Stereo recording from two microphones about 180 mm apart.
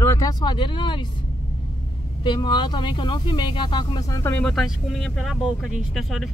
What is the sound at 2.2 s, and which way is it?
Speech, 25° left (ahead or behind).